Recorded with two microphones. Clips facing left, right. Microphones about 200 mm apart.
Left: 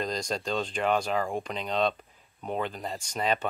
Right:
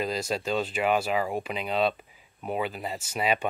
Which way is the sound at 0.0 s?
5° right (ahead or behind).